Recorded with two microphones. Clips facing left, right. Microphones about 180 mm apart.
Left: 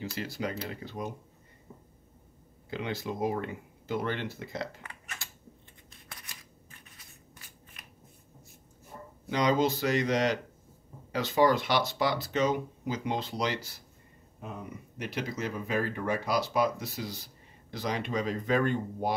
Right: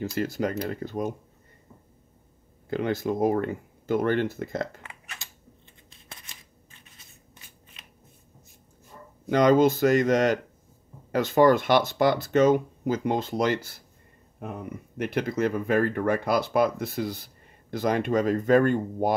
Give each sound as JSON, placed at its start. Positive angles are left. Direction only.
{"t": 0.0, "sound": "speech", "side_deg": -50}
{"t": 2.7, "sound": "speech", "side_deg": -50}
{"t": 5.2, "sound": "typing", "side_deg": -20}
{"t": 5.9, "sound": "scissors", "side_deg": -25}
{"t": 7.0, "sound": "a sound", "side_deg": -25}
{"t": 9.3, "sound": "speech", "side_deg": -50}
{"t": 15.0, "sound": "speech", "side_deg": -55}